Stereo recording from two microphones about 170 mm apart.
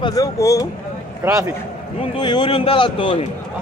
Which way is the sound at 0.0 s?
20° left (ahead or behind).